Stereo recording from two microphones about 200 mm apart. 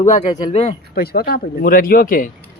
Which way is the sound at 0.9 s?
50° left (ahead or behind).